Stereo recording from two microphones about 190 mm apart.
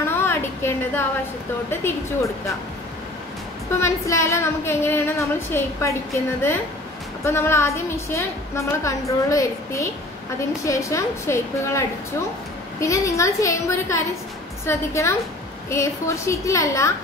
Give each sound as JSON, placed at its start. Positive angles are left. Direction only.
{"t": 0.1, "sound": "a sound", "side_deg": 10}
{"t": 1.7, "sound": "a woman's voice", "side_deg": 10}
{"t": 3.8, "sound": "a woman's voice", "side_deg": 15}
{"t": 12.8, "sound": "a woman's voice", "side_deg": 15}